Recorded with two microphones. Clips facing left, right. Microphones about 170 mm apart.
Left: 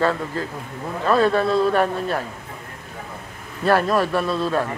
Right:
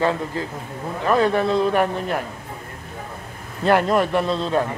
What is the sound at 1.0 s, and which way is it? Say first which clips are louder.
A man's voice: even; 15° right (ahead or behind).